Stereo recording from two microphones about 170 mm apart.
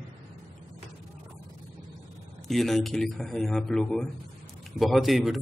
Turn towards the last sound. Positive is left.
turn(degrees=0)  # may be behind; listen again after turning